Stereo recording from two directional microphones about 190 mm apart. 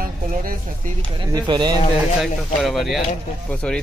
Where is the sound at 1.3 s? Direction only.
20° right (ahead or behind).